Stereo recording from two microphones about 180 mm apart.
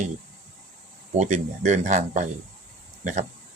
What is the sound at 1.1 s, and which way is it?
Speech, 40° right (ahead or behind).